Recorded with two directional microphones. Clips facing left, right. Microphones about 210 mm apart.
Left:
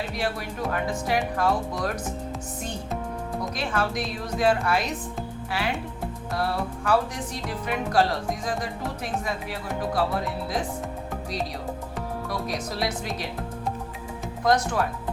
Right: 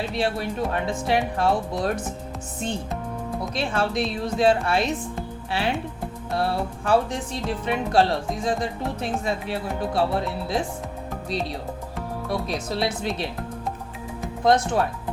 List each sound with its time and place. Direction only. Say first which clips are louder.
0.1 s speech: right 4 dB; 25° right (ahead or behind)
3.5 s speech: right 4 dB; 30° right (ahead or behind)
12.3 s speech: right 5 dB; 25° right (ahead or behind)
14.4 s speech: right 3 dB; 25° right (ahead or behind)